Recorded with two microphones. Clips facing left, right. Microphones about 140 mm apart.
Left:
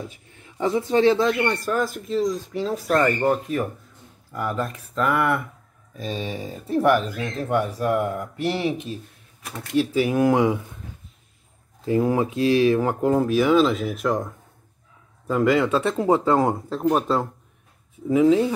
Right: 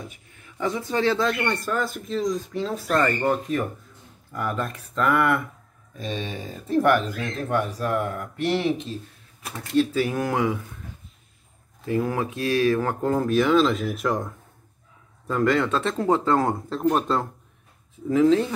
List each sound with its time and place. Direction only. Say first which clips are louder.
0.4 s a man's voice: left 4 dB; 25° left (ahead or behind)
2.0 s speech: left 2 dB; centre (ahead or behind); by 10.6 s 20° left (ahead or behind)
11.8 s speech: left 4 dB; 25° left (ahead or behind)